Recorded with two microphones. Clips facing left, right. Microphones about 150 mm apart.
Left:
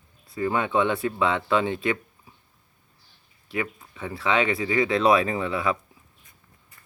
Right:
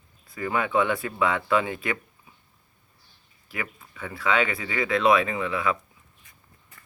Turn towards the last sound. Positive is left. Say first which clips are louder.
# left 1 dB
turn(degrees=30)  # may be behind; listen again after turning